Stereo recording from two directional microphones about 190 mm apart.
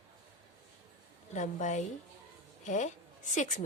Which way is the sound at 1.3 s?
40° left (ahead or behind).